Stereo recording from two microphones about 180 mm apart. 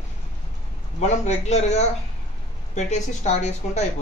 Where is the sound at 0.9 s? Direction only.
40° left (ahead or behind).